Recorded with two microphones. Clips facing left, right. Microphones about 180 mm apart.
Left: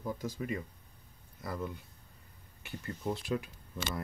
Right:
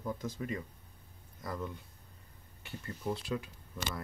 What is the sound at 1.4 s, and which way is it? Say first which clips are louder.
Speech: left 1 dB; 10° left (ahead or behind).